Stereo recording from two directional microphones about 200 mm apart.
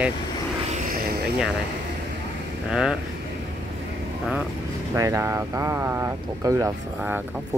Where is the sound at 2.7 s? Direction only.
Centre (ahead or behind).